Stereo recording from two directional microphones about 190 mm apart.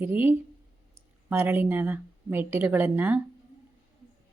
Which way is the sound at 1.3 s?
10° right (ahead or behind).